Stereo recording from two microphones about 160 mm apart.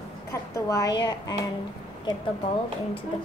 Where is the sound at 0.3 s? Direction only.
20° left (ahead or behind).